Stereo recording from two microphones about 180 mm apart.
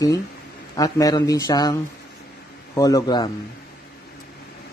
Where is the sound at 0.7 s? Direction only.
20° left (ahead or behind).